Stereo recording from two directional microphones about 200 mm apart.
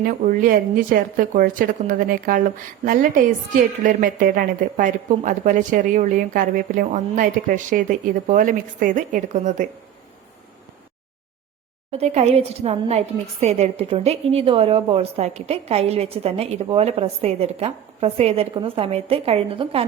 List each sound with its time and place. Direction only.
0.0 s a woman's voice: 40° right (ahead or behind)
11.9 s a woman's voice: 30° right (ahead or behind)